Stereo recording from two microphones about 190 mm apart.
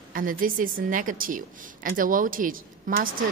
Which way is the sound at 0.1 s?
45° right (ahead or behind).